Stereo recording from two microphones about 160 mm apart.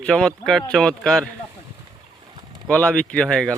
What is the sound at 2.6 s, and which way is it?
Speech, 5° left (ahead or behind).